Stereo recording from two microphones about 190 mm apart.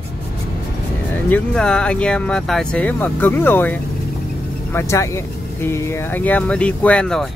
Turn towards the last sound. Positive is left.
turn(degrees=5)  # may be behind; listen again after turning